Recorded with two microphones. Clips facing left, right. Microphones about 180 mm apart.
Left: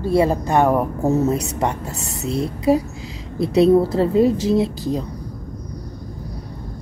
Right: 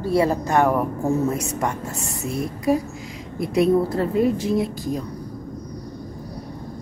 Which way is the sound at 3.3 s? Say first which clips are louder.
Left 4 dB; 30° left (ahead or behind).